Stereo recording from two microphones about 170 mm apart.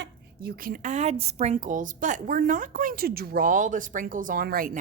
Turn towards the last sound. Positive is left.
turn(degrees=-60)  # may be behind; listen again after turning